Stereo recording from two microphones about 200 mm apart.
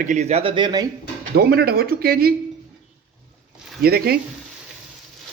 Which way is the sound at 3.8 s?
50° right (ahead or behind).